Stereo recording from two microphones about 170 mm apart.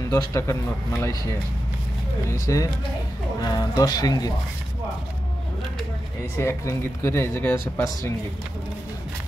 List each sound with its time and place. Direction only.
0.1 s speech: 20° left (ahead or behind)
6.3 s speech: 15° left (ahead or behind)